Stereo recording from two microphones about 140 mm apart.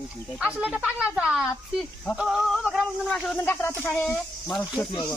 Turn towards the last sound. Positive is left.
turn(degrees=5)  # may be behind; listen again after turning